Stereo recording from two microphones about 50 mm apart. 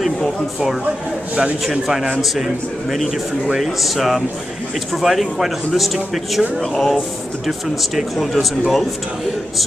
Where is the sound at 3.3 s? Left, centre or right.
Centre.